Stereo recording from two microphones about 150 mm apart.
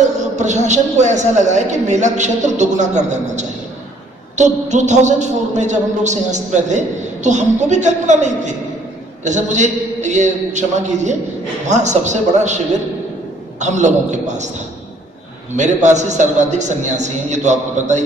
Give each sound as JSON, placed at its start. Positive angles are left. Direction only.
{"t": 0.0, "sound": "a woman's voice", "side_deg": -50}
{"t": 13.6, "sound": "a woman's voice", "side_deg": -50}
{"t": 15.5, "sound": "a woman's voice", "side_deg": -50}